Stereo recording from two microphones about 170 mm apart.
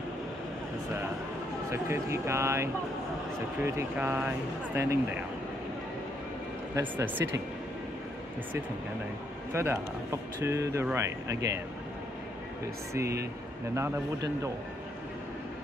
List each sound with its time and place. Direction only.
1.7 s speech: 15° right (ahead or behind)
6.7 s speech: 15° right (ahead or behind)
9.5 s speech: 15° right (ahead or behind)
12.9 s speech: 15° right (ahead or behind)